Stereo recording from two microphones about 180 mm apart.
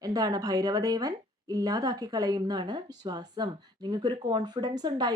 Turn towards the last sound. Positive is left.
turn(degrees=-25)  # may be behind; listen again after turning